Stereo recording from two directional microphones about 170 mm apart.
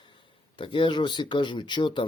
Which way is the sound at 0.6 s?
30° left (ahead or behind).